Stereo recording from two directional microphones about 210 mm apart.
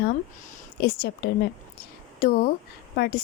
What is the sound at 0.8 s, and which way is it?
Speech, 50° left (ahead or behind).